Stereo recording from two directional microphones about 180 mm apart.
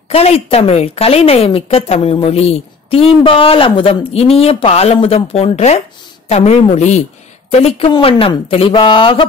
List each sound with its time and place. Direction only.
0.1 s a woman's voice: 35° left (ahead or behind)